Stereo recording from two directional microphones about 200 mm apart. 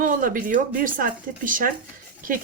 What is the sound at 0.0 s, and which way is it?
A woman's voice, 45° right (ahead or behind).